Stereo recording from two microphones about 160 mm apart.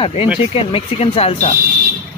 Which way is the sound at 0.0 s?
35° left (ahead or behind).